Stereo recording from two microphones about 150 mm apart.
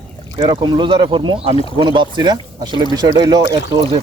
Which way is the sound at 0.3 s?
35° right (ahead or behind).